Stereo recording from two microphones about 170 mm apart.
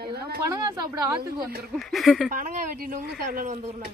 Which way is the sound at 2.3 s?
50° right (ahead or behind).